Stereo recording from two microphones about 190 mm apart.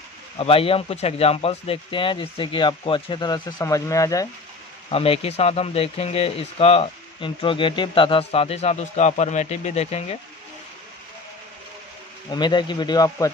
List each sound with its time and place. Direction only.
0.4 s speech: 30° left (ahead or behind)
4.9 s speech: 30° left (ahead or behind)
12.3 s speech: 20° left (ahead or behind)